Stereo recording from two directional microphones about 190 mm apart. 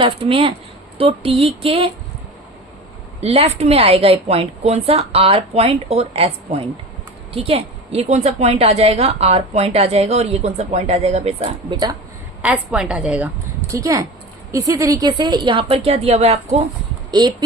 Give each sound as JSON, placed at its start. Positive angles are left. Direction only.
{"t": 0.0, "sound": "a woman's voice", "side_deg": -30}
{"t": 3.2, "sound": "a woman's voice", "side_deg": -30}
{"t": 12.4, "sound": "a woman's voice", "side_deg": -5}
{"t": 17.1, "sound": "speech", "side_deg": -20}